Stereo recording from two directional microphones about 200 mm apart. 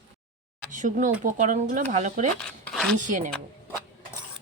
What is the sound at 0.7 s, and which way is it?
Speech, 40° right (ahead or behind).